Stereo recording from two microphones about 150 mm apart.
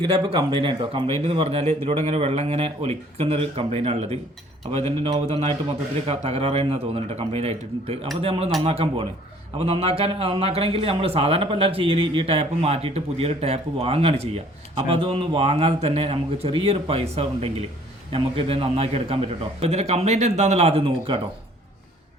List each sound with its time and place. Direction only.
0.0 s a man's voice: 35° right (ahead or behind)